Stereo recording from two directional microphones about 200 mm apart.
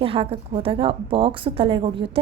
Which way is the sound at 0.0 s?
30° right (ahead or behind).